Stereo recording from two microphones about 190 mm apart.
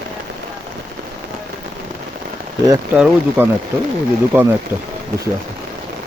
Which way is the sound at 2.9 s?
5° right (ahead or behind).